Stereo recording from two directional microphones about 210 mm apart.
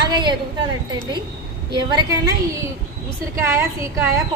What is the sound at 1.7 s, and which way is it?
Speech, 20° right (ahead or behind).